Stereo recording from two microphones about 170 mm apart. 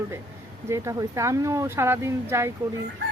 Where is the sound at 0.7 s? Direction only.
20° right (ahead or behind).